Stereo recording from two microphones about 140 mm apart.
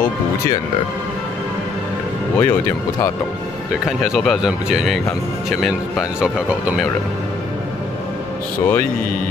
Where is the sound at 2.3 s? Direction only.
15° left (ahead or behind).